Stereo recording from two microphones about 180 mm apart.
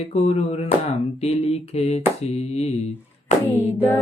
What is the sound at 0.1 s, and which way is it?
Speech, 35° left (ahead or behind).